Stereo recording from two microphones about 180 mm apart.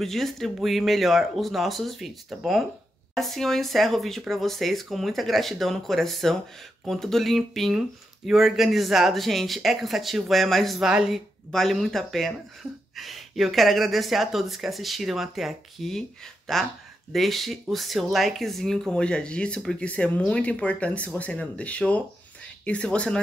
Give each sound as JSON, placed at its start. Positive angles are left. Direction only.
{"t": 0.0, "sound": "speech", "side_deg": 0}